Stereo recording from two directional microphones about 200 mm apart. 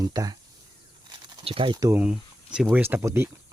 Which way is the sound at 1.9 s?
5° right (ahead or behind).